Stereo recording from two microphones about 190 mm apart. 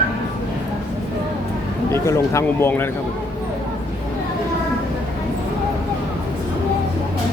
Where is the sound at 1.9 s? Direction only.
15° left (ahead or behind).